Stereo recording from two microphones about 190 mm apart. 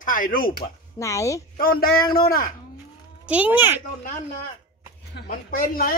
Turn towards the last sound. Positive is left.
turn(degrees=50)  # may be behind; listen again after turning